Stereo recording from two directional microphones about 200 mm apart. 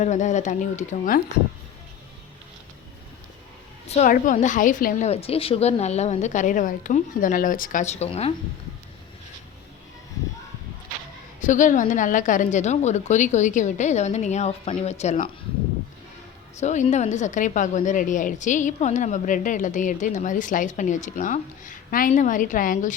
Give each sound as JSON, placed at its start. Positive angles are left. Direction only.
{"t": 0.0, "sound": "a woman's voice", "side_deg": 35}
{"t": 3.8, "sound": "a woman's voice", "side_deg": 35}
{"t": 11.3, "sound": "a woman's voice", "side_deg": 40}
{"t": 16.6, "sound": "a woman's voice", "side_deg": 35}